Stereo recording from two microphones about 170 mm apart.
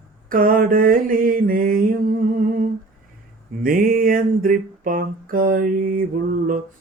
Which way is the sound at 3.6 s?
55° right (ahead or behind).